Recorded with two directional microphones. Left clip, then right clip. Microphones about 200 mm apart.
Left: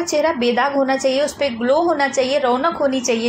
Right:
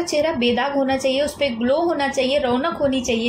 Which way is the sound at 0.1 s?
Centre (ahead or behind).